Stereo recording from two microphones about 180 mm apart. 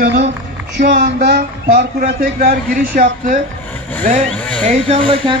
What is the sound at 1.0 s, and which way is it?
A man's voice, 55° right (ahead or behind).